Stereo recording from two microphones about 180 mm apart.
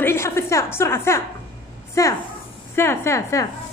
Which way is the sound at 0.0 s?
15° left (ahead or behind).